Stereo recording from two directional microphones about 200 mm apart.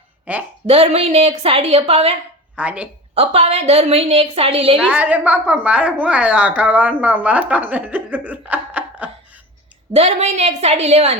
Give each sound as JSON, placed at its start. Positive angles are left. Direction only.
{"t": 0.3, "sound": "a woman's voice", "side_deg": -5}
{"t": 0.7, "sound": "a woman's voice", "side_deg": -30}
{"t": 2.6, "sound": "a woman's voice", "side_deg": -5}
{"t": 3.2, "sound": "a woman's voice", "side_deg": -30}
{"t": 4.8, "sound": "a woman's voice", "side_deg": -5}
{"t": 9.9, "sound": "a woman's voice", "side_deg": -30}